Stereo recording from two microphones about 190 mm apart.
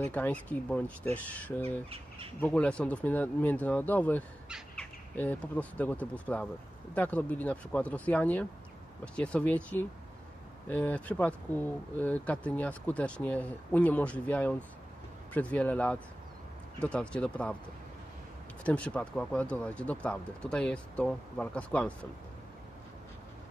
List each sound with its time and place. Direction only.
0.1 s speech: 10° left (ahead or behind)
4.5 s bird: 5° right (ahead or behind)
5.1 s speech: 10° left (ahead or behind)
18.6 s speech: 5° left (ahead or behind)